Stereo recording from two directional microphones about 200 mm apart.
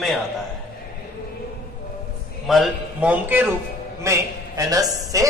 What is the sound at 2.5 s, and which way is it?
A man's voice, centre (ahead or behind).